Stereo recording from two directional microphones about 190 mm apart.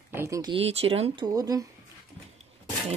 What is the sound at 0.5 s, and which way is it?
Speech, 30° right (ahead or behind).